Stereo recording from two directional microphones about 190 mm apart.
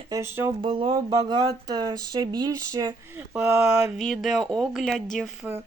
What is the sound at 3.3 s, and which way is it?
Speech, 10° right (ahead or behind).